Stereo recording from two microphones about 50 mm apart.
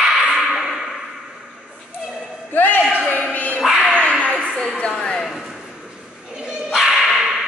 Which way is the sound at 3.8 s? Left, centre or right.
Centre.